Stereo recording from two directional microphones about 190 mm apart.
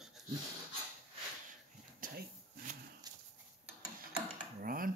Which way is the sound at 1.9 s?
45° right (ahead or behind).